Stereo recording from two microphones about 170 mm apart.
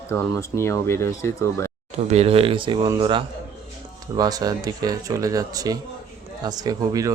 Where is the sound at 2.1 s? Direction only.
35° right (ahead or behind).